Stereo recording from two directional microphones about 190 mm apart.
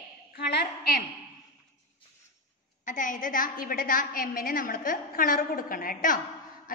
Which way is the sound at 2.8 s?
45° left (ahead or behind).